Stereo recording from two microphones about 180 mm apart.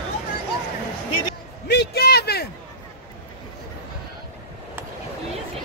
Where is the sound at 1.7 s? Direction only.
65° left (ahead or behind).